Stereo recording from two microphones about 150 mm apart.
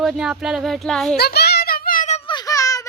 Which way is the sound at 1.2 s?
90° left.